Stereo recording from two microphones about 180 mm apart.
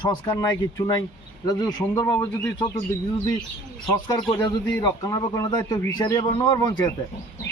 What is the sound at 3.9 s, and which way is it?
A man's voice, 20° left (ahead or behind).